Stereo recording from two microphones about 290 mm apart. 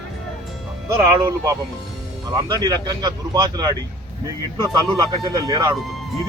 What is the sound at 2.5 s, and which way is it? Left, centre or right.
Speech, centre.